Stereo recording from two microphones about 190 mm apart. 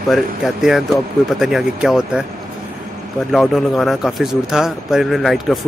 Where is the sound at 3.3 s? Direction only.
Centre (ahead or behind).